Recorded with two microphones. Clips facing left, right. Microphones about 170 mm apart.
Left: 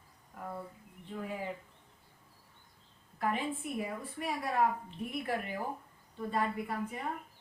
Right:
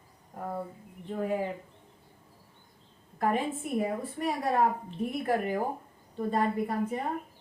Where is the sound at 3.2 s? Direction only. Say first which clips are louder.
Right 5 dB; 45° right (ahead or behind).